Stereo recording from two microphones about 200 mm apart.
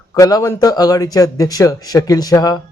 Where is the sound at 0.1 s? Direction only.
20° left (ahead or behind).